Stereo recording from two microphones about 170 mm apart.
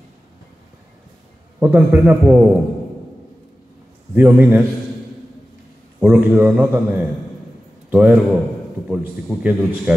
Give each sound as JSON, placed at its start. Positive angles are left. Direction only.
{"t": 1.6, "sound": "a man's voice", "side_deg": -15}
{"t": 4.1, "sound": "a man's voice", "side_deg": -10}
{"t": 5.9, "sound": "a man's voice", "side_deg": -10}